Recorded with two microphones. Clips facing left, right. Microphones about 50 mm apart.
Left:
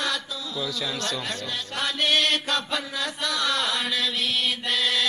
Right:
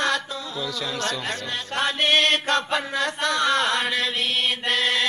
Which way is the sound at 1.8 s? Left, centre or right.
Right.